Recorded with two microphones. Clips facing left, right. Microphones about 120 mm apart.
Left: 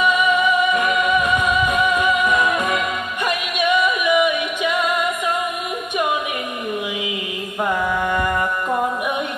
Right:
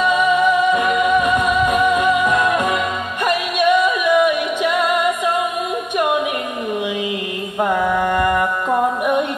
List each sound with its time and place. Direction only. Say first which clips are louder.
0.7 s music: right 3 dB; centre (ahead or behind)
7.7 s music: right 3 dB; centre (ahead or behind)